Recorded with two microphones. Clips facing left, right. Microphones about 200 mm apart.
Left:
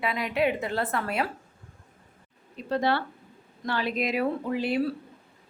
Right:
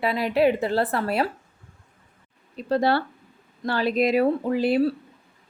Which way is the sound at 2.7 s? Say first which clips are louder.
Right 4 dB; 35° right (ahead or behind).